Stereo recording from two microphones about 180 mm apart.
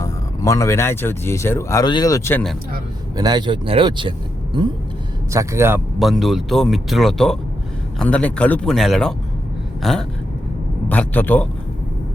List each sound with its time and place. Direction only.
0.0 s speech: 15° left (ahead or behind)
3.2 s speech: 25° right (ahead or behind)
5.3 s a man's voice: 15° right (ahead or behind)
6.0 s speech: centre (ahead or behind)